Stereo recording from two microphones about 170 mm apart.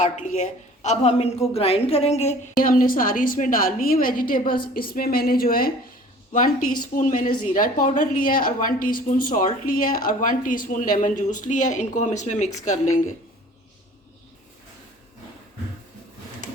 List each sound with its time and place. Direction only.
0.0 s a woman's voice: 45° left (ahead or behind)
2.6 s a woman's voice: 55° left (ahead or behind)
6.3 s a woman's voice: 45° left (ahead or behind)